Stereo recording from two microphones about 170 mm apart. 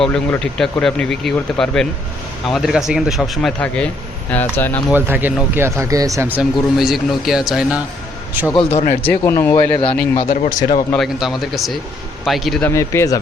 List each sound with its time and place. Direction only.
0.0 s speech: 5° left (ahead or behind)
4.9 s speech: 10° right (ahead or behind)
9.0 s speech: 15° left (ahead or behind)
10.2 s speech: 50° left (ahead or behind)
10.9 s speech: centre (ahead or behind)
12.6 s speech: 15° left (ahead or behind)